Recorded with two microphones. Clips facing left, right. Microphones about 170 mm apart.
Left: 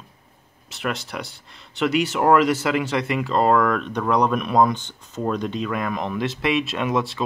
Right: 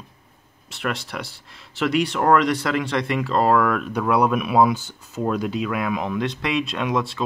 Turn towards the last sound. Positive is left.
turn(degrees=0)  # may be behind; listen again after turning